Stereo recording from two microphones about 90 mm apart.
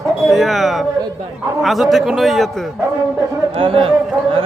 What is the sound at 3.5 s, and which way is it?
Speech, 85° right.